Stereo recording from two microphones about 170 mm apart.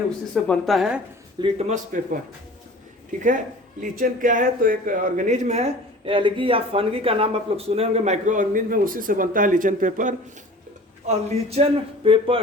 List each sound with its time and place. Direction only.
0.4 s a woman's voice: 5° left (ahead or behind)
1.4 s a man's voice: 35° right (ahead or behind)
3.2 s speech: 50° right (ahead or behind)
6.1 s a man's voice: 30° right (ahead or behind)